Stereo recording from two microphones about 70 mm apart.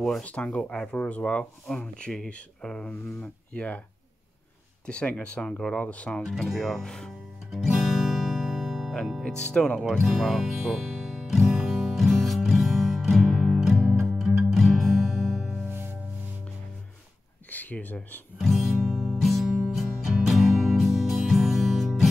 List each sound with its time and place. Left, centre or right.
0.2 s speech: centre
4.8 s speech: centre
6.3 s speech: centre
7.5 s music: centre
9.4 s speech: centre
10.0 s music: centre
17.5 s a sound: left
18.4 s music: centre